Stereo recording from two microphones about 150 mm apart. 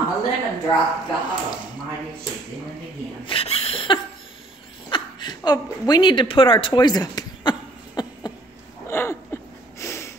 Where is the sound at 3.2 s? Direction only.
40° left (ahead or behind).